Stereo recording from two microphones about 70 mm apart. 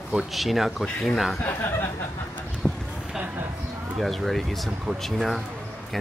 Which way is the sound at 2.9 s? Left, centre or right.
Centre.